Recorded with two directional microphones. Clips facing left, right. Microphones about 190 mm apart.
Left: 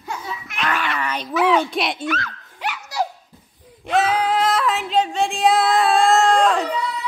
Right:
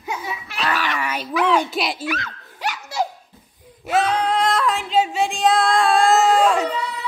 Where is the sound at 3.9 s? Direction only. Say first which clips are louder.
Left 1 dB; 5° left (ahead or behind).